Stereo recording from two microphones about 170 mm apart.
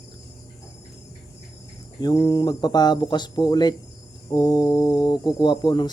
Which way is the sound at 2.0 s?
25° left (ahead or behind).